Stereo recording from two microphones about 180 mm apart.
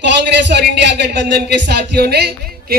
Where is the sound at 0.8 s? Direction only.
70° right (ahead or behind).